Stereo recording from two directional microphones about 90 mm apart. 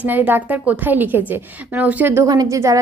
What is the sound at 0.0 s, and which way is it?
A woman's voice, 20° right (ahead or behind).